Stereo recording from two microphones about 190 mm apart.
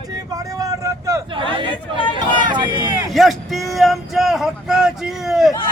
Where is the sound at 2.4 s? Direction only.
25° right (ahead or behind).